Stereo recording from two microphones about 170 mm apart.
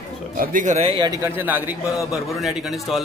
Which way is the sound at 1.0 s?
20° right (ahead or behind).